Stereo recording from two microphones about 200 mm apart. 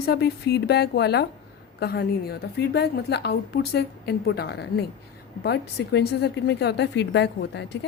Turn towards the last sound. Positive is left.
turn(degrees=60)  # may be behind; listen again after turning